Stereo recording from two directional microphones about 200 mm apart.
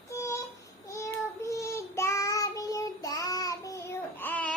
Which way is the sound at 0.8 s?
15° left (ahead or behind).